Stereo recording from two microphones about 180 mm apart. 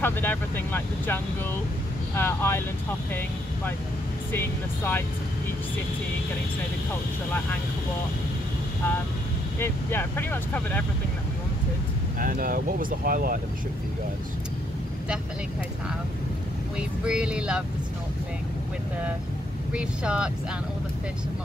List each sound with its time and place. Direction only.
0.0 s speech: 10° left (ahead or behind)
9.6 s speech: 10° left (ahead or behind)
12.2 s speech: 50° right (ahead or behind)
16.7 s speech: 5° right (ahead or behind)
19.7 s speech: 5° right (ahead or behind)